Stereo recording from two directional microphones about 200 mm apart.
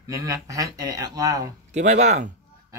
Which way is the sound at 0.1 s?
15° right (ahead or behind).